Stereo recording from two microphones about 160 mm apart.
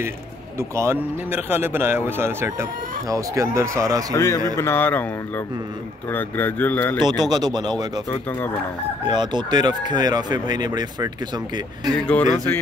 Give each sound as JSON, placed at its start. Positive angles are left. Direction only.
{"t": 0.6, "sound": "speech", "side_deg": -15}
{"t": 4.1, "sound": "a man's voice", "side_deg": 20}
{"t": 7.1, "sound": "speech", "side_deg": -25}
{"t": 8.1, "sound": "a man's voice", "side_deg": 15}
{"t": 9.0, "sound": "speech", "side_deg": -25}
{"t": 11.9, "sound": "a man's voice", "side_deg": 10}